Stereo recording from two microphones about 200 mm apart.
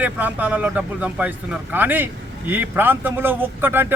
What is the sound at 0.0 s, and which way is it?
A man's voice, 10° right (ahead or behind).